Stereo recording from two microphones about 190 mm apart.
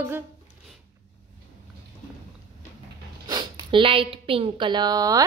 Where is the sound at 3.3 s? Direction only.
25° right (ahead or behind).